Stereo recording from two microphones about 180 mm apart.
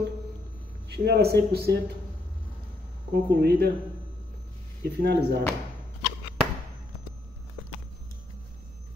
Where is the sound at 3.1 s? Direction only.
60° right (ahead or behind).